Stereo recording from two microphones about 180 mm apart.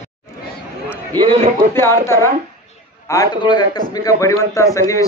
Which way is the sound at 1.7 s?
15° left (ahead or behind).